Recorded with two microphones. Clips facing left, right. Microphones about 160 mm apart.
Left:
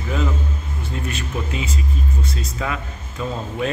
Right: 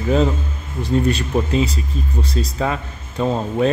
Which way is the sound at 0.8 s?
35° right (ahead or behind).